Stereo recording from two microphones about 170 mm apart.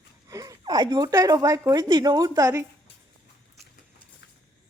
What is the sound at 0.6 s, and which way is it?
Speech, 25° right (ahead or behind).